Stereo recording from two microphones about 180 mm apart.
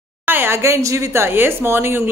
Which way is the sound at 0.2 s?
10° right (ahead or behind).